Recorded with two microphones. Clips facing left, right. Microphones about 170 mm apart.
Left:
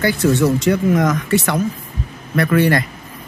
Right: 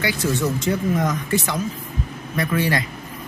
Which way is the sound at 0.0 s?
65° left (ahead or behind).